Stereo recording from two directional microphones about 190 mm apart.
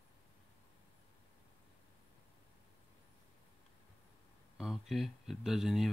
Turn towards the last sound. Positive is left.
turn(degrees=0)  # may be behind; listen again after turning